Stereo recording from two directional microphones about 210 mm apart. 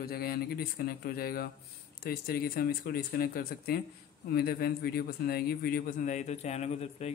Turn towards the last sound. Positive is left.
turn(degrees=30)  # may be behind; listen again after turning